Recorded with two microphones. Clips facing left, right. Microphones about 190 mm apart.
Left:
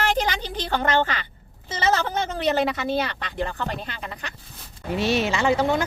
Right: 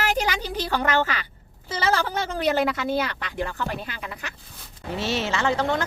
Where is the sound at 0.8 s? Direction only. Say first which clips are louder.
Left 2 dB; 25° left (ahead or behind).